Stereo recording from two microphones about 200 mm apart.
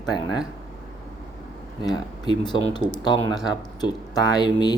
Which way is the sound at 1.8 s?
20° left (ahead or behind).